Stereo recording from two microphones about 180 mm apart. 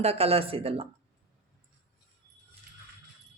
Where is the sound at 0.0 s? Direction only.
35° right (ahead or behind).